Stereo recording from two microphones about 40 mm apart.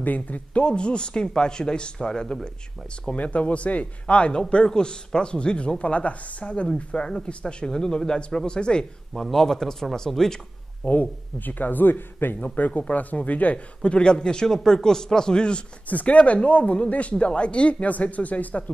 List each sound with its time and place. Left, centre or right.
0.0 s speech: left
0.7 s a man's voice: left
3.1 s a man's voice: left
9.1 s speech: centre
10.9 s a man's voice: left
12.5 s a man's voice: left
15.9 s speech: left